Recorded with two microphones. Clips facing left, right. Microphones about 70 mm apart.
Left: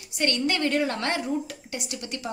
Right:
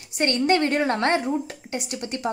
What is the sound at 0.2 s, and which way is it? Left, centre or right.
A woman's voice, right.